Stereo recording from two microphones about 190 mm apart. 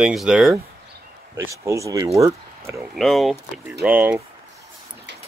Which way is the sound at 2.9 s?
Centre (ahead or behind).